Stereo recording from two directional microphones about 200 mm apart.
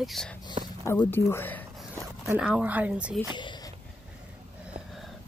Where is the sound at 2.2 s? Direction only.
5° right (ahead or behind).